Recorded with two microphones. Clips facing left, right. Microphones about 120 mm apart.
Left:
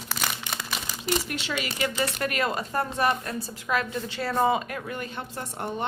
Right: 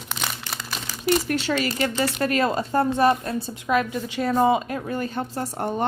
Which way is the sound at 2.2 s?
30° right (ahead or behind).